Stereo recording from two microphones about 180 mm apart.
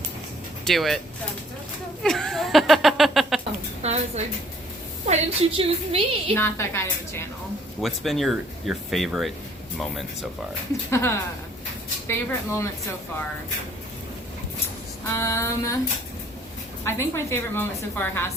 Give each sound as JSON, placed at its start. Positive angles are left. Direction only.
{"t": 0.6, "sound": "speech", "side_deg": 0}
{"t": 2.0, "sound": "speech", "side_deg": 0}
{"t": 3.8, "sound": "a sound", "side_deg": -40}
{"t": 5.0, "sound": "a woman's voice", "side_deg": -35}
{"t": 6.3, "sound": "a woman's voice", "side_deg": 15}
{"t": 7.8, "sound": "speech", "side_deg": 0}
{"t": 10.9, "sound": "a woman's voice", "side_deg": 15}
{"t": 15.0, "sound": "a woman's voice", "side_deg": 15}
{"t": 16.8, "sound": "a woman's voice", "side_deg": 15}